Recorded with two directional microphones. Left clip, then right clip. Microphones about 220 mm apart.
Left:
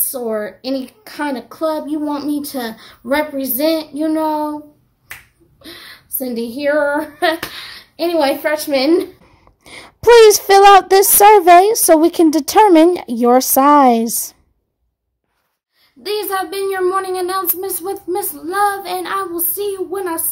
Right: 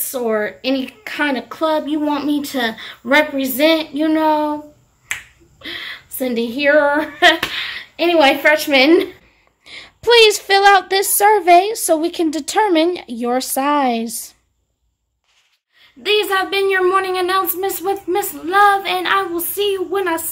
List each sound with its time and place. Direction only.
0.1 s a woman's voice: 5° left (ahead or behind)
5.6 s a woman's voice: 5° left (ahead or behind)
9.7 s a sound: 35° left (ahead or behind)
10.1 s a woman's voice: 30° left (ahead or behind)
16.0 s a woman's voice: 5° left (ahead or behind)